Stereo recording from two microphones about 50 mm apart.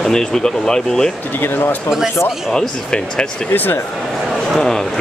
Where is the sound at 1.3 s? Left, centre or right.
Left.